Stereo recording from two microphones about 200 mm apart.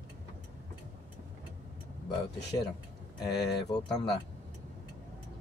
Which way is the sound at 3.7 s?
20° left (ahead or behind).